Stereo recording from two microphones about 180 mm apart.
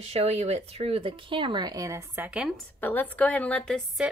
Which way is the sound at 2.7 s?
10° left (ahead or behind).